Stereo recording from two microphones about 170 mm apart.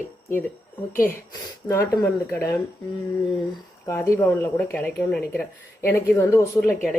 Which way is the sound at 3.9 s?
15° left (ahead or behind).